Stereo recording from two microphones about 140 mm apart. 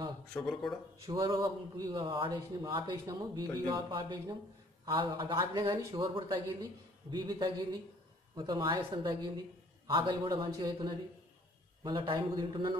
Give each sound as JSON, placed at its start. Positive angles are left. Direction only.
{"t": 0.3, "sound": "speech", "side_deg": 5}
{"t": 1.2, "sound": "a man's voice", "side_deg": -25}